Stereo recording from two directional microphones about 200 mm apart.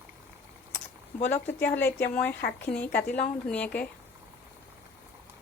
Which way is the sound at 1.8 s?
10° left (ahead or behind).